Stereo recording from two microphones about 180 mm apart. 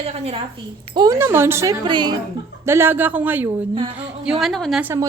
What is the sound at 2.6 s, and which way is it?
A woman's voice, 15° right (ahead or behind).